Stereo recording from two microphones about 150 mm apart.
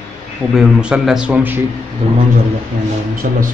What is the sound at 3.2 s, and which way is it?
Music, 65° right (ahead or behind).